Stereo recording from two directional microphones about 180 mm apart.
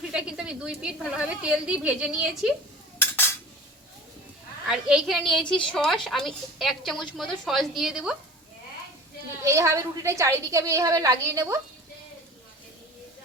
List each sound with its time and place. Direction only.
0.1 s a woman's voice: 5° right (ahead or behind)
4.6 s a woman's voice: 5° right (ahead or behind)
9.4 s a woman's voice: 15° right (ahead or behind)